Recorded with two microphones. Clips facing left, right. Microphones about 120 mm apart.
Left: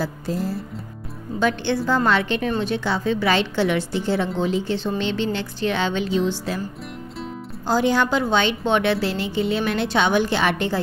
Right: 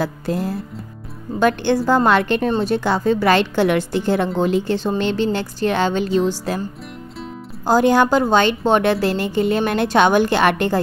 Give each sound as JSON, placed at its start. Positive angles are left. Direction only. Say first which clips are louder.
{"t": 0.0, "sound": "music", "louder": "right 3 dB", "side_deg": -60}
{"t": 1.4, "sound": "a woman's voice", "louder": "right 5 dB", "side_deg": -50}
{"t": 7.6, "sound": "a woman's voice", "louder": "right 5 dB", "side_deg": -50}